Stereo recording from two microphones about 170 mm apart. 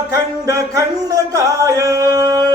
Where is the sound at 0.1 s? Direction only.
20° right (ahead or behind).